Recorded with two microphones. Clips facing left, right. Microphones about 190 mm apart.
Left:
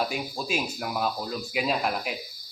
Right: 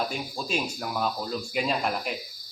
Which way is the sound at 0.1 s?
5° left (ahead or behind).